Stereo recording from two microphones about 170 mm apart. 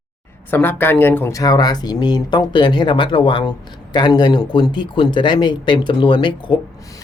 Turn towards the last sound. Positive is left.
turn(degrees=25)  # may be behind; listen again after turning